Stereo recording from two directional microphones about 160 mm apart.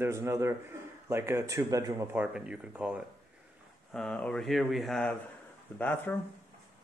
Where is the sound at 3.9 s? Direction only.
5° left (ahead or behind).